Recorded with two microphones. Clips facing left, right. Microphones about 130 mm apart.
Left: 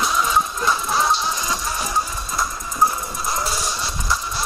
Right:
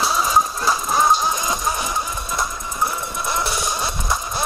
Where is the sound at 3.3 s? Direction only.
60° right (ahead or behind).